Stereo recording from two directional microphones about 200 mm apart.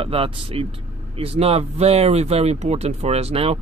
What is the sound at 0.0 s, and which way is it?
Speech, 30° right (ahead or behind).